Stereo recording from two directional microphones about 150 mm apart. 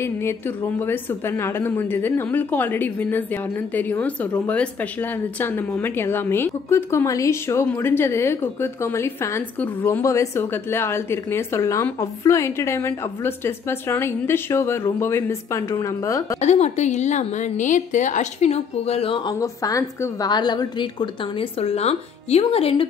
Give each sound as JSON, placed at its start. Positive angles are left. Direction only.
{"t": 0.0, "sound": "a woman's voice", "side_deg": 15}
{"t": 16.3, "sound": "a woman's voice", "side_deg": 50}
{"t": 19.4, "sound": "a woman's voice", "side_deg": 20}